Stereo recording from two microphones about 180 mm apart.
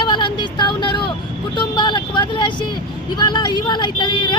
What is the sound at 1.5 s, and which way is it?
Vehicle, 25° left (ahead or behind).